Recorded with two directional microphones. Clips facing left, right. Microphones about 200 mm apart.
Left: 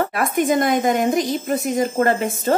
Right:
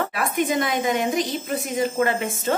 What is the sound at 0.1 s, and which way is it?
Speech, 45° left (ahead or behind).